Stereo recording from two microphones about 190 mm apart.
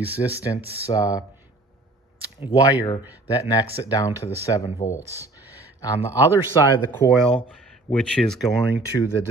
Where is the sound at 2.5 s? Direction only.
20° left (ahead or behind).